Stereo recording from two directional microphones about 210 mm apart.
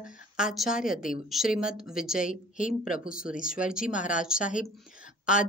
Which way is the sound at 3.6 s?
5° right (ahead or behind).